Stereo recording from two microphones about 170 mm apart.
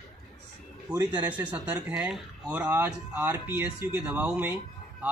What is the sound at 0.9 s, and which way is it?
Speech, 5° right (ahead or behind).